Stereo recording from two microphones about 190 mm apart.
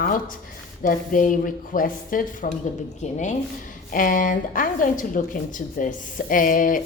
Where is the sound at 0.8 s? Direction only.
45° left (ahead or behind).